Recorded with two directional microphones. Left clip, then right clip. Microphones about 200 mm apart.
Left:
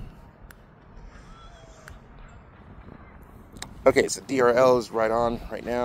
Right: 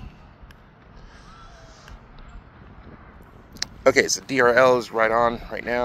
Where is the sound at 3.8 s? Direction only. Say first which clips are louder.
Right 2 dB; 15° left (ahead or behind).